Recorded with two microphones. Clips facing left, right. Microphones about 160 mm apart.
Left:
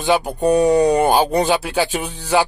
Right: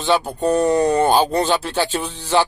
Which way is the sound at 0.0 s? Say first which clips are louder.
Left 2 dB; 10° left (ahead or behind).